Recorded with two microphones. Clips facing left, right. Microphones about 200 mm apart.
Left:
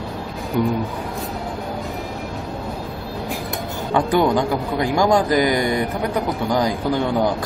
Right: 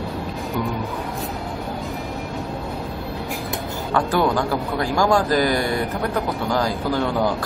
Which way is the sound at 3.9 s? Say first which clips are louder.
Left 3 dB; 20° left (ahead or behind).